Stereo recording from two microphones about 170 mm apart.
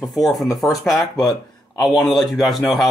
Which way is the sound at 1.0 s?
20° left (ahead or behind).